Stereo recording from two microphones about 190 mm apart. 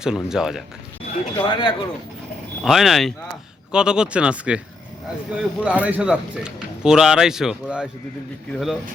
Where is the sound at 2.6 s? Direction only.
Centre (ahead or behind).